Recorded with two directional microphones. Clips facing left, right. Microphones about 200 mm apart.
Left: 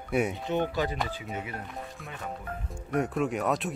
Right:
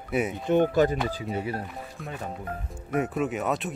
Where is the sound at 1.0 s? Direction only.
35° right (ahead or behind).